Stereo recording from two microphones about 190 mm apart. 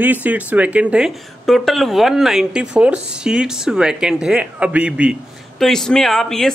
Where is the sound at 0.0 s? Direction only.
10° right (ahead or behind).